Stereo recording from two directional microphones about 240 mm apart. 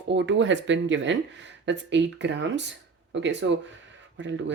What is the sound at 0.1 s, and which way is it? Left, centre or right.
Speech, right.